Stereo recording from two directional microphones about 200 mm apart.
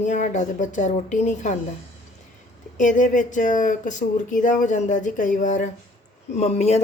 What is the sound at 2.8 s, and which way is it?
Speech, 40° left (ahead or behind).